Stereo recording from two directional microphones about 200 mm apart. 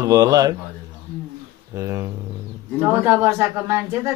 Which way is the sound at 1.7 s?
15° right (ahead or behind).